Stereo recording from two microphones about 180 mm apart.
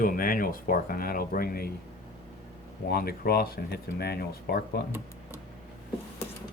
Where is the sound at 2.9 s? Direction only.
55° left (ahead or behind).